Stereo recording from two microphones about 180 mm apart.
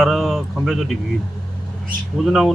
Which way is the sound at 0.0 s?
Centre (ahead or behind).